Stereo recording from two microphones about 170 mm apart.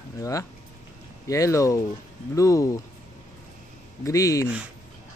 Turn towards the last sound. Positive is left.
turn(degrees=20)  # may be behind; listen again after turning